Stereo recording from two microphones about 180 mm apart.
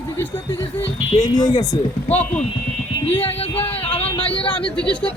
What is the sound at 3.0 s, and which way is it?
Speech, 30° left (ahead or behind).